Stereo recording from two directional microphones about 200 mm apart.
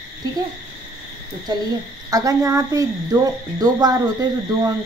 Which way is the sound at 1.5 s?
20° right (ahead or behind).